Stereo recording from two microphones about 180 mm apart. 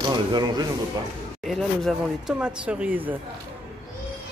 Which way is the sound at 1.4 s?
Centre (ahead or behind).